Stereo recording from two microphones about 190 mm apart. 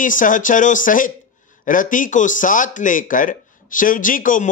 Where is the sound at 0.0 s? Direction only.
45° left (ahead or behind).